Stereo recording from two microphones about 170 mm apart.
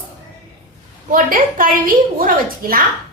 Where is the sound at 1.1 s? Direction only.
55° right (ahead or behind).